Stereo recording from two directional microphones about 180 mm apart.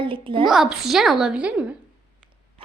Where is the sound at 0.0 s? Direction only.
30° right (ahead or behind).